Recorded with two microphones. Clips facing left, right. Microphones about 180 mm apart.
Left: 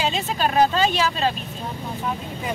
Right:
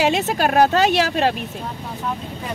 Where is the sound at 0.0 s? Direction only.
75° right (ahead or behind).